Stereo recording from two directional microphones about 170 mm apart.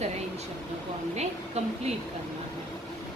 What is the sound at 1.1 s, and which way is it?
Speech, 40° right (ahead or behind).